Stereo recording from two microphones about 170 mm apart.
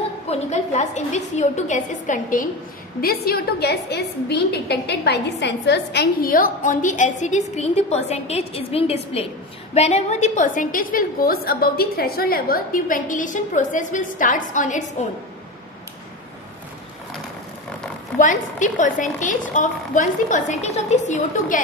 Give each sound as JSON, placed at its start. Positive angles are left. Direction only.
{"t": 0.3, "sound": "a woman's voice", "side_deg": 40}
{"t": 3.0, "sound": "a woman's voice", "side_deg": 60}
{"t": 18.2, "sound": "a woman's voice", "side_deg": 45}